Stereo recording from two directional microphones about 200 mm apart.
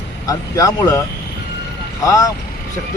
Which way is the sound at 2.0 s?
15° left (ahead or behind).